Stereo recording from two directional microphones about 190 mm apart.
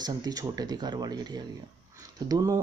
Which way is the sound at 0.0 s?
20° right (ahead or behind).